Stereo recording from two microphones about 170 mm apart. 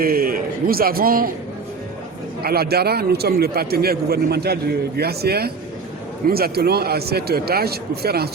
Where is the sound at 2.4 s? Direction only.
65° right (ahead or behind).